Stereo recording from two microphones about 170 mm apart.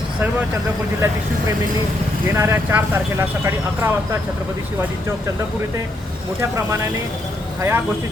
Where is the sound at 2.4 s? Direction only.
15° right (ahead or behind).